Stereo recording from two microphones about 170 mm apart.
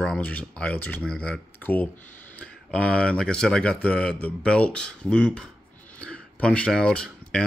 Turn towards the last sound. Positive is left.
turn(degrees=5)  # may be behind; listen again after turning